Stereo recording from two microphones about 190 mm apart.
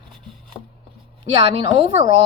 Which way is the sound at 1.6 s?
25° right (ahead or behind).